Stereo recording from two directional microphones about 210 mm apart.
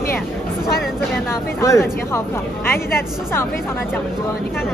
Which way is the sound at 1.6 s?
15° left (ahead or behind).